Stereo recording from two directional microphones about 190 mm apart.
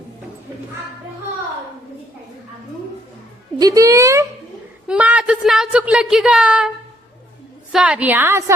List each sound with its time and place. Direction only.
3.6 s a woman's voice: 20° right (ahead or behind)
7.7 s a woman's voice: 5° right (ahead or behind)